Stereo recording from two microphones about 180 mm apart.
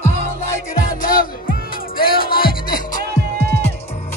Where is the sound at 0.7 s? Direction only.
50° left (ahead or behind).